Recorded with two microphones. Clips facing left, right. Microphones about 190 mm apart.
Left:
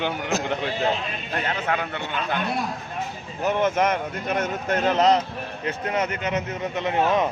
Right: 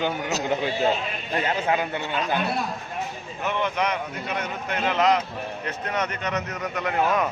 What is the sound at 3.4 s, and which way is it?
A man's voice, 45° left (ahead or behind).